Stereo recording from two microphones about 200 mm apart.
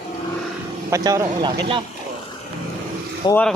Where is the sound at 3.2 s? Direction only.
20° left (ahead or behind).